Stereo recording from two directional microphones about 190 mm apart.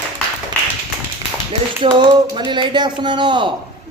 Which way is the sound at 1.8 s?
25° right (ahead or behind).